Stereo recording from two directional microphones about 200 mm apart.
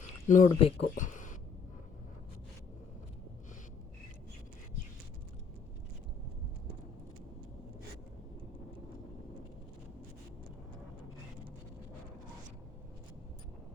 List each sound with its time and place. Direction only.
0.3 s speech: 40° left (ahead or behind)